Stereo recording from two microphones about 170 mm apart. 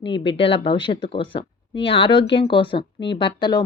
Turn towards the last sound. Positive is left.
turn(degrees=25)  # may be behind; listen again after turning